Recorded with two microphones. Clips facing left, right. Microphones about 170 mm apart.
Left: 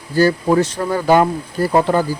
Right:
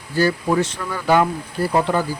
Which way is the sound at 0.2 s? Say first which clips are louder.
Left 4 dB; 40° left (ahead or behind).